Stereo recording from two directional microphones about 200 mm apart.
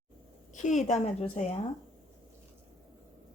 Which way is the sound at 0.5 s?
35° left (ahead or behind).